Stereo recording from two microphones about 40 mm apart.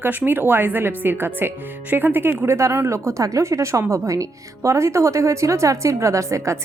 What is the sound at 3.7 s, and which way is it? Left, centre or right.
Speech, right.